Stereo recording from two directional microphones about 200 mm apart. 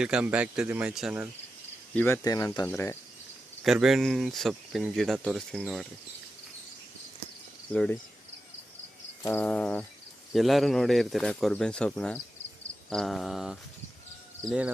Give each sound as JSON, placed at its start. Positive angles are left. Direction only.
{"t": 0.0, "sound": "speech", "side_deg": -5}
{"t": 2.0, "sound": "speech", "side_deg": 10}
{"t": 3.6, "sound": "speech", "side_deg": 0}
{"t": 7.7, "sound": "speech", "side_deg": 5}
{"t": 9.2, "sound": "speech", "side_deg": 10}